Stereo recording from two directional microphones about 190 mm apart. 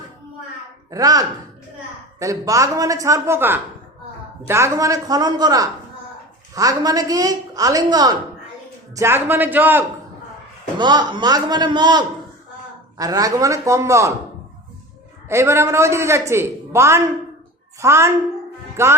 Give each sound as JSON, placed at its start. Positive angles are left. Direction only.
{"t": 0.9, "sound": "a woman's voice", "side_deg": -20}
{"t": 10.8, "sound": "a woman's voice", "side_deg": -25}
{"t": 15.3, "sound": "a woman's voice", "side_deg": -15}